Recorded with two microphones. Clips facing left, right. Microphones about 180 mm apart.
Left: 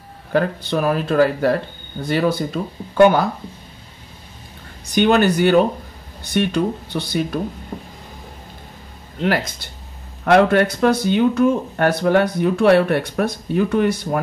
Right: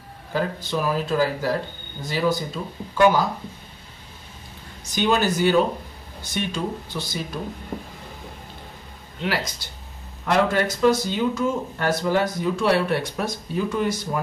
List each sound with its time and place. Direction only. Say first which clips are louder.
0.3 s speech: left 6 dB; 60° left (ahead or behind)
4.9 s speech: left 6 dB; 60° left (ahead or behind)
9.2 s speech: left 6 dB; 55° left (ahead or behind)